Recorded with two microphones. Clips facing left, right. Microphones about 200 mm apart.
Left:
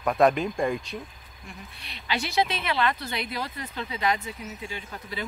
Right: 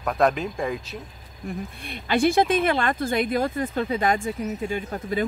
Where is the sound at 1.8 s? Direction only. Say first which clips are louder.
Right 9 dB; 50° right (ahead or behind).